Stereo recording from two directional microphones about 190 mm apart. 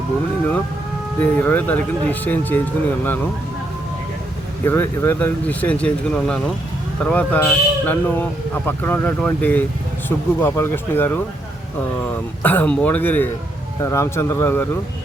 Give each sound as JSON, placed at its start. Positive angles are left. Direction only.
{"t": 1.2, "sound": "speech", "side_deg": 10}
{"t": 4.6, "sound": "speech", "side_deg": 10}